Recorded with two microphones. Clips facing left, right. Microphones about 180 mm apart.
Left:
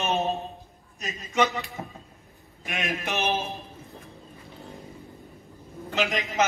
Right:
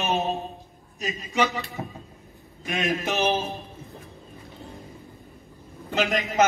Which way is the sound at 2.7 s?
20° right (ahead or behind).